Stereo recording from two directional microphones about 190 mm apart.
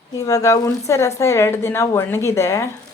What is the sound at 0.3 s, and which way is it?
Speech, 15° left (ahead or behind).